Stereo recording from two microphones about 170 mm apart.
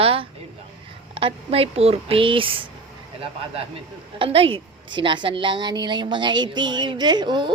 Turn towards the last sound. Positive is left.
turn(degrees=-25)  # may be behind; listen again after turning